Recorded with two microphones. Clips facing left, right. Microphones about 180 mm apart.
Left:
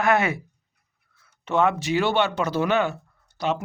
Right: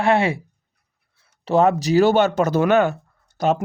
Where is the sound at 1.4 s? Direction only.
35° right (ahead or behind).